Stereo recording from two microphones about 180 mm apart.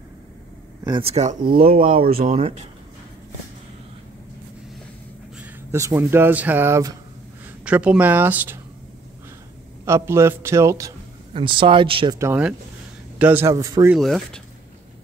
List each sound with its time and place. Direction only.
0.8 s speech: 25° right (ahead or behind)
1.4 s speech: 55° right (ahead or behind)
5.4 s a man's voice: 15° right (ahead or behind)
9.8 s a man's voice: 15° right (ahead or behind)
11.3 s speech: 30° right (ahead or behind)
12.2 s a man's voice: 10° right (ahead or behind)
13.9 s speech: centre (ahead or behind)